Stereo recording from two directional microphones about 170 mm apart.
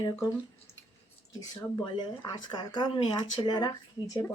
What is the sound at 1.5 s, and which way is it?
A woman's voice, 25° left (ahead or behind).